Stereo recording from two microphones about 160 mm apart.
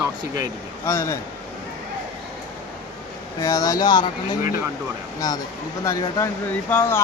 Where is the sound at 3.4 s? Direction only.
20° left (ahead or behind).